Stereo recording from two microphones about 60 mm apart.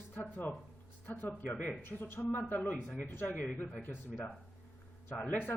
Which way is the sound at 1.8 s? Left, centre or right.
Left.